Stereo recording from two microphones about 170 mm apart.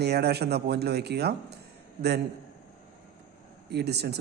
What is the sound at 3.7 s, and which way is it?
Speech, 75° right (ahead or behind).